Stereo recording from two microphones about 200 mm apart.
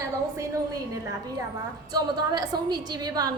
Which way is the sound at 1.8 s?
20° right (ahead or behind).